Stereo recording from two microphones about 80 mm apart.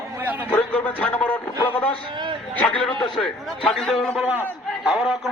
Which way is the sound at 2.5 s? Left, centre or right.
Centre.